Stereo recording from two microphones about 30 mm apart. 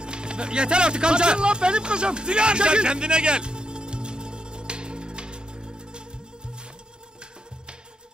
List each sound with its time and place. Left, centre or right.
0.0 s music: right